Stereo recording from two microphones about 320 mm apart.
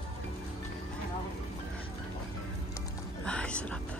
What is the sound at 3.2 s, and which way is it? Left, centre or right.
Whispering, centre.